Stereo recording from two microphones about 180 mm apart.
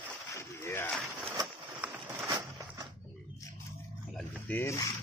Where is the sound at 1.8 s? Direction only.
15° right (ahead or behind).